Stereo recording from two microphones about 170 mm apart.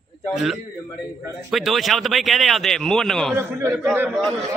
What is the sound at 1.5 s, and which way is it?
Male singing, centre (ahead or behind).